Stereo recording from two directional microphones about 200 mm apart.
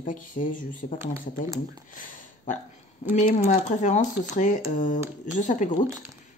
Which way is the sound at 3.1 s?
35° left (ahead or behind).